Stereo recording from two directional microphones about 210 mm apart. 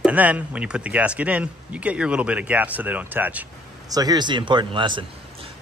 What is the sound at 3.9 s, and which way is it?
Speech, 20° right (ahead or behind).